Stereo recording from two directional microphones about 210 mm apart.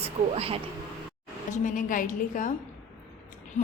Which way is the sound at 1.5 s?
40° left (ahead or behind).